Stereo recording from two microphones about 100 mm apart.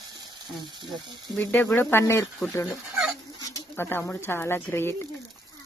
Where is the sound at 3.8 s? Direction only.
20° left (ahead or behind).